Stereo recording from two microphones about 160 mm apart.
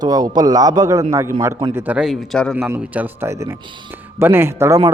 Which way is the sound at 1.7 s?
10° right (ahead or behind).